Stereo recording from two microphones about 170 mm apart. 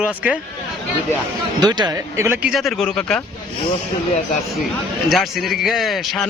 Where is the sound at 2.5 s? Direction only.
Centre (ahead or behind).